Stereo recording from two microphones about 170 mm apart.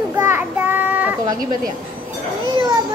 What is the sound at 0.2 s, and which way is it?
Child singing, 10° right (ahead or behind).